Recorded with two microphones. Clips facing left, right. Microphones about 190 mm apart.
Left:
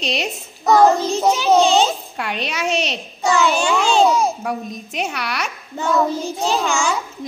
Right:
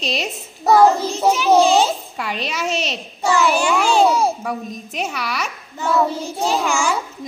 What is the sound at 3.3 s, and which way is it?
Child singing, 25° left (ahead or behind).